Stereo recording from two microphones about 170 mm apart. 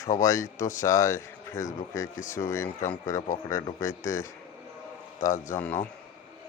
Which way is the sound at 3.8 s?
20° left (ahead or behind).